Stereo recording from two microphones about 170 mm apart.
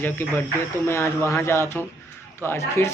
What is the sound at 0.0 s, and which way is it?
Speech, 10° left (ahead or behind).